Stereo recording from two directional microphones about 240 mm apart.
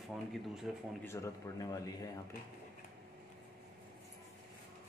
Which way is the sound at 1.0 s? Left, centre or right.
Centre.